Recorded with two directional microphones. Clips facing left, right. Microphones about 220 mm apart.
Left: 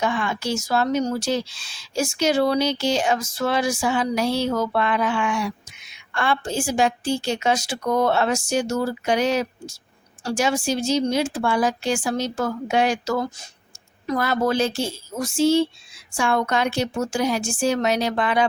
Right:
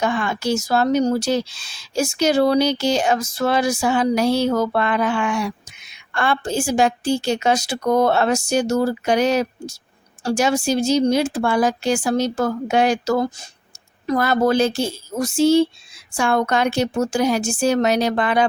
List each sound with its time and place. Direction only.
0.0 s speech: 45° right (ahead or behind)